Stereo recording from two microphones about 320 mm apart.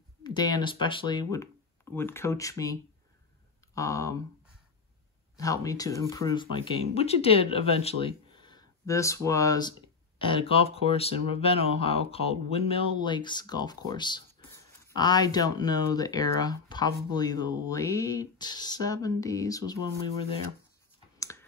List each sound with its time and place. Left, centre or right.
0.2 s speech: centre
5.3 s speech: centre
21.2 s clicking: centre